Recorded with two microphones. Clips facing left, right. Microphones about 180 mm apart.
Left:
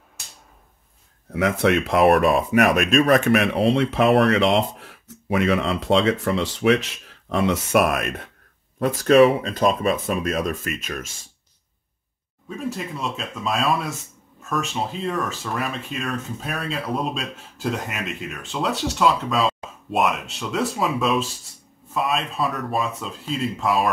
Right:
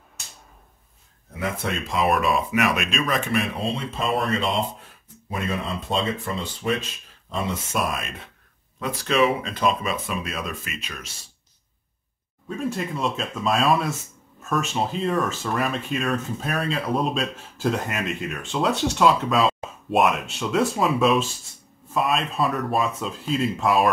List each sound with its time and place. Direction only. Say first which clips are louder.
1.3 s speech: left 9 dB; 75° left (ahead or behind)
2.1 s speech: left 5 dB; 45° left (ahead or behind)
3.3 s speech: left 7 dB; 75° left (ahead or behind)
8.7 s speech: left 8 dB; 45° left (ahead or behind)
12.4 s speech: right 2 dB; centre (ahead or behind)